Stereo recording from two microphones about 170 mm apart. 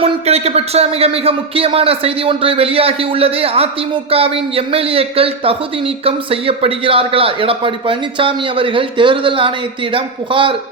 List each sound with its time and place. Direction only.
0.0 s speech: 35° right (ahead or behind)